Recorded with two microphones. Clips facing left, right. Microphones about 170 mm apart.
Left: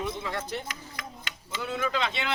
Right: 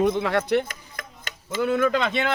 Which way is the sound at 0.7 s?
50° right (ahead or behind).